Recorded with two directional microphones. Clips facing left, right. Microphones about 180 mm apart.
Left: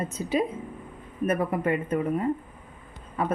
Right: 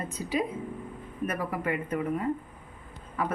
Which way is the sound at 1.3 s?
25° left (ahead or behind).